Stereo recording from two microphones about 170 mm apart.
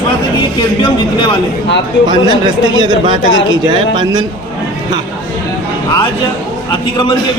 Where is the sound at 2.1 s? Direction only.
25° right (ahead or behind).